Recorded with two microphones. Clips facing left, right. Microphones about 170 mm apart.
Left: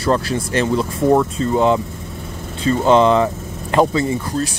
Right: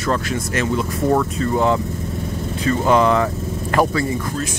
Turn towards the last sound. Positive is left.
turn(degrees=20)  # may be behind; listen again after turning